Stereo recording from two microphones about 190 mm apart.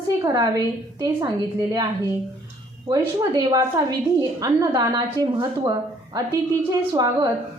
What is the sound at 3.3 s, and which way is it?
A woman's voice, 20° right (ahead or behind).